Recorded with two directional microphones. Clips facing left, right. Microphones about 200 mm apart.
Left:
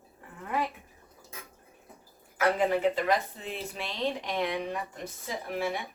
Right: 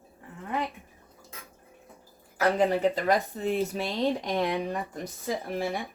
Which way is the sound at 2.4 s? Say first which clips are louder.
Right 2 dB; 35° right (ahead or behind).